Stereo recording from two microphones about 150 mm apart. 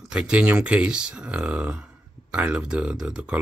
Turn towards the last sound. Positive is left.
turn(degrees=-5)  # may be behind; listen again after turning